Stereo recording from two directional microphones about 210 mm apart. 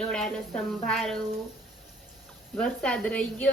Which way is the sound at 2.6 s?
5° left (ahead or behind).